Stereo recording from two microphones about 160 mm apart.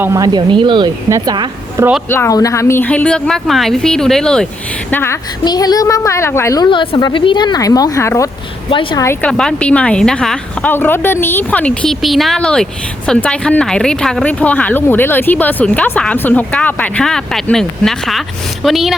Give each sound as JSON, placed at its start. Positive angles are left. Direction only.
{"t": 0.0, "sound": "speech", "side_deg": -20}
{"t": 2.0, "sound": "speech", "side_deg": 15}
{"t": 5.5, "sound": "speech", "side_deg": 25}
{"t": 6.7, "sound": "speech", "side_deg": 30}
{"t": 8.7, "sound": "a woman's voice", "side_deg": 30}
{"t": 9.2, "sound": "speech", "side_deg": 5}